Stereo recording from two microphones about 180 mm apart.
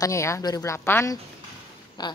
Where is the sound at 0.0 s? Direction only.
15° left (ahead or behind).